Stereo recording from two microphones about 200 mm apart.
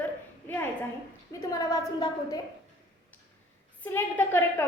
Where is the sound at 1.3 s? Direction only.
15° left (ahead or behind).